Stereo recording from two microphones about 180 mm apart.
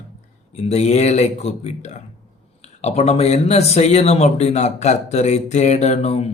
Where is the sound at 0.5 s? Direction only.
35° left (ahead or behind).